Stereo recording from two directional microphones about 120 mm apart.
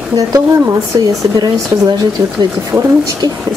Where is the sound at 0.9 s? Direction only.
30° right (ahead or behind).